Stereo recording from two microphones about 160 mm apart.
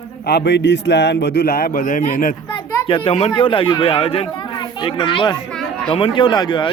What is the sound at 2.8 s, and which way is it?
A child's voice, 35° left (ahead or behind).